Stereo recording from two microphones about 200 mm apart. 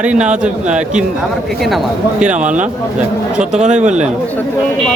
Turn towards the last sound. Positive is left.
turn(degrees=-35)  # may be behind; listen again after turning